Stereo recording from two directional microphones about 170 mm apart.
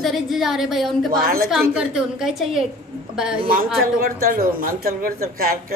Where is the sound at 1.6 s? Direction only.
5° right (ahead or behind).